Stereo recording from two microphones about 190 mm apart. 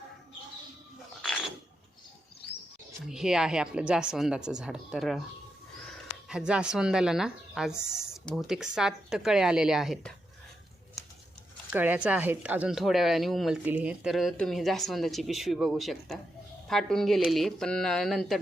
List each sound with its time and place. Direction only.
3.1 s speech: 5° right (ahead or behind)
6.2 s speech: 5° right (ahead or behind)
11.7 s speech: 10° right (ahead or behind)